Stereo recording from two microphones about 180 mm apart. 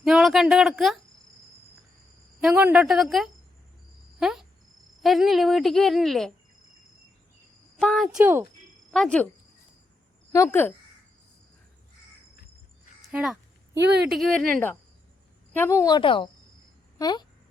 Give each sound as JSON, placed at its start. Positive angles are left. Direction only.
{"t": 0.0, "sound": "speech", "side_deg": 0}
{"t": 2.4, "sound": "speech", "side_deg": -5}
{"t": 4.2, "sound": "cricket", "side_deg": 0}
{"t": 5.0, "sound": "speech", "side_deg": 0}
{"t": 7.8, "sound": "speech", "side_deg": 0}
{"t": 8.2, "sound": "speech", "side_deg": -10}
{"t": 8.9, "sound": "speech", "side_deg": 5}
{"t": 10.3, "sound": "speech", "side_deg": 15}
{"t": 13.1, "sound": "speech", "side_deg": -5}